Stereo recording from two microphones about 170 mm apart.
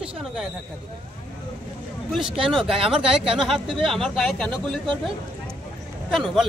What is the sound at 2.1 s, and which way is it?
Speech, centre (ahead or behind).